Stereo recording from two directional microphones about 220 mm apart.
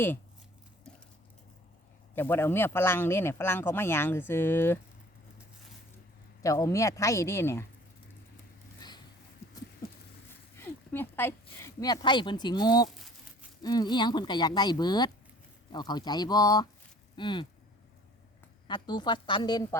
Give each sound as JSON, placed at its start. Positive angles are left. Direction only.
{"t": 2.1, "sound": "speech", "side_deg": 10}
{"t": 6.4, "sound": "speech", "side_deg": 15}
{"t": 10.6, "sound": "speech", "side_deg": 10}
{"t": 18.7, "sound": "speech", "side_deg": 20}